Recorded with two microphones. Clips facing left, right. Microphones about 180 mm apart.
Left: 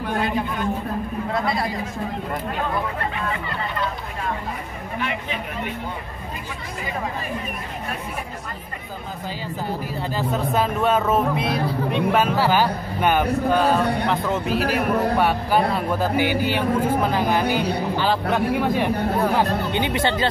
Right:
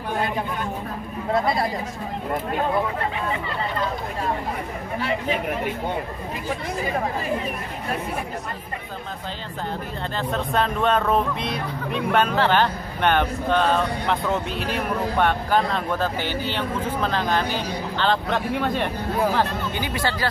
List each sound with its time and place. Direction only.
10.1 s speech: 5° left (ahead or behind)
17.5 s a woman's voice: 65° left (ahead or behind)
17.9 s speech: 5° left (ahead or behind)
19.7 s speech: 20° left (ahead or behind)